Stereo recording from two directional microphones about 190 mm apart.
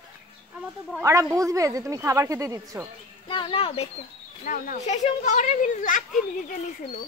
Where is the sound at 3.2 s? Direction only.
25° left (ahead or behind).